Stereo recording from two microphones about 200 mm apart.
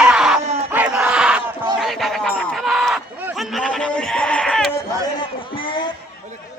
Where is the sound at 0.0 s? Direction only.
5° right (ahead or behind).